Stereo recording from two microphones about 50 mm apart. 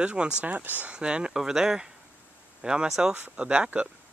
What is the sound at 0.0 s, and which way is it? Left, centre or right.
Speech, right.